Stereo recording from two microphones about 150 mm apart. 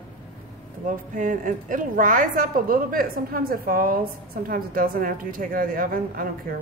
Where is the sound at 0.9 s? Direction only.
60° right (ahead or behind).